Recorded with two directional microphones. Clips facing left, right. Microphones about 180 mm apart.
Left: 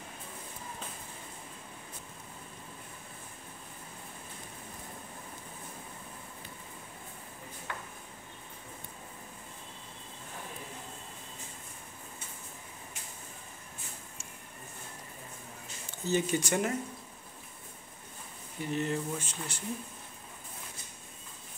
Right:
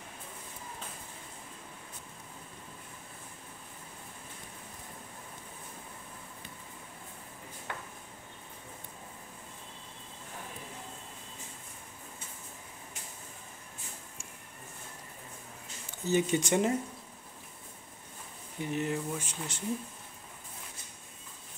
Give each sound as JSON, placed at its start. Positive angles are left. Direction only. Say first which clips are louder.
{"t": 16.1, "sound": "speech", "louder": "right 2 dB", "side_deg": -20}
{"t": 18.6, "sound": "speech", "louder": "even", "side_deg": -15}